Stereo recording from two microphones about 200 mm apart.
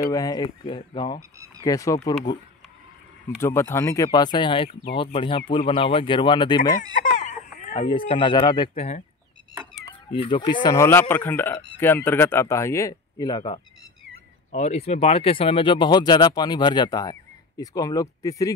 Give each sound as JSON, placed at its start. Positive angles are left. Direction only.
{"t": 0.0, "sound": "speech", "side_deg": 20}
{"t": 3.3, "sound": "speech", "side_deg": 10}
{"t": 6.7, "sound": "chicken", "side_deg": 40}
{"t": 8.1, "sound": "speech", "side_deg": 25}
{"t": 14.5, "sound": "speech", "side_deg": 35}